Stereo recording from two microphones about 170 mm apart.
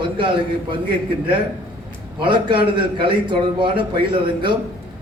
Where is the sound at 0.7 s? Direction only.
30° right (ahead or behind).